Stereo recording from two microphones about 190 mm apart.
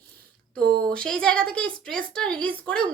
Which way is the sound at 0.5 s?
50° right (ahead or behind).